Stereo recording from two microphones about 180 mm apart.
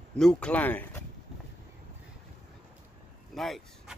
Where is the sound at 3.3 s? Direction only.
Centre (ahead or behind).